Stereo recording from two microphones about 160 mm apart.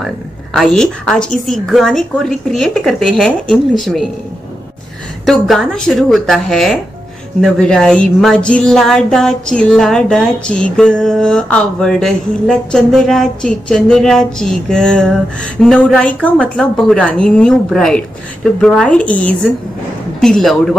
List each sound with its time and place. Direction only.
0.0 s speech: centre (ahead or behind)
5.2 s a woman's voice: centre (ahead or behind)